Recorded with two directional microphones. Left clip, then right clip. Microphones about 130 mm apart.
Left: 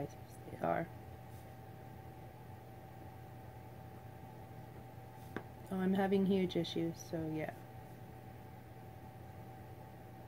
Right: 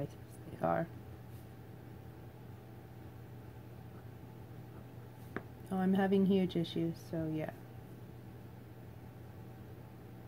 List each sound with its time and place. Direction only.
0.6 s speech: 40° right (ahead or behind)
5.4 s a sound: 25° right (ahead or behind)
5.7 s speech: 40° right (ahead or behind)